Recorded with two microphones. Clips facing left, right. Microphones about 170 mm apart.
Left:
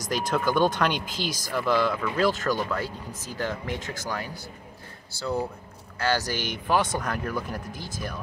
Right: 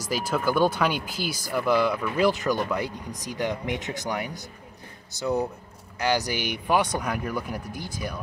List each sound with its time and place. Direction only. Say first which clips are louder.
0.0 s speech: even; 5° right (ahead or behind)